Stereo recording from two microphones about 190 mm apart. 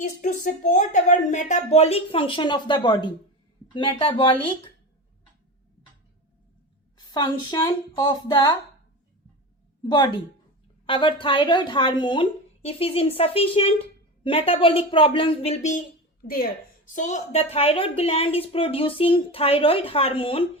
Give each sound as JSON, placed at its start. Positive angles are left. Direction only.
{"t": 0.0, "sound": "a woman's voice", "side_deg": 40}
{"t": 7.1, "sound": "speech", "side_deg": 25}
{"t": 9.9, "sound": "speech", "side_deg": 25}
{"t": 16.2, "sound": "a woman's voice", "side_deg": 50}